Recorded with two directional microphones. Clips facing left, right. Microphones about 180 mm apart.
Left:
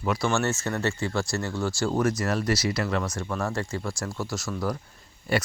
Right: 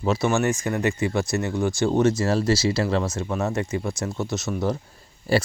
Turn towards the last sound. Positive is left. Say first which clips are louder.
# right 5 dB
turn(degrees=-30)  # may be behind; listen again after turning